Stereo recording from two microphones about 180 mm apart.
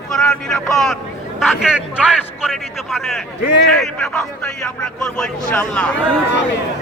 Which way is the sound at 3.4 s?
65° left (ahead or behind).